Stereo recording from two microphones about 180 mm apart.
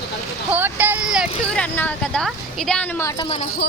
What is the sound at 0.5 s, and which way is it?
Speech, 10° right (ahead or behind).